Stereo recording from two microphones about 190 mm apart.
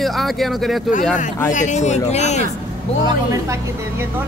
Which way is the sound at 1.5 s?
40° left (ahead or behind).